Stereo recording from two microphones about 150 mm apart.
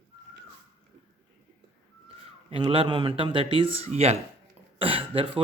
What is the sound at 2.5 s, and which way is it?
Speech, 35° right (ahead or behind).